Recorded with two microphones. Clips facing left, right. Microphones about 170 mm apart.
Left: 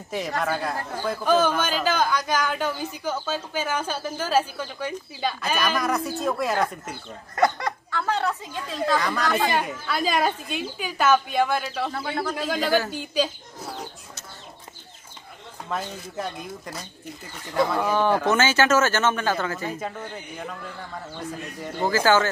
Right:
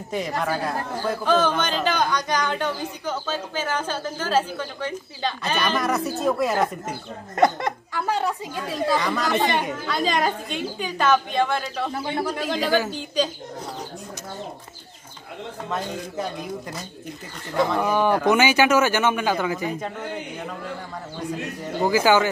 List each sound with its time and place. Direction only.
1.0 s speech: 10° left (ahead or behind)
7.3 s speech: 20° right (ahead or behind)
9.0 s speech: centre (ahead or behind)
11.9 s speech: 15° right (ahead or behind)
12.9 s speech: 5° left (ahead or behind)
17.6 s speech: centre (ahead or behind)
17.8 s speech: 10° right (ahead or behind)
21.8 s speech: 15° right (ahead or behind)